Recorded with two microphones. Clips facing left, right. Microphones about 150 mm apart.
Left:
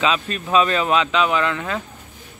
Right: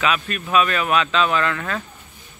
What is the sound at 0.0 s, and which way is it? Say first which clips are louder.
Speech: left 1 dB; 25° left (ahead or behind).